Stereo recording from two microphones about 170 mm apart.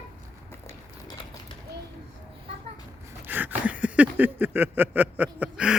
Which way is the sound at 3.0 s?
10° right (ahead or behind).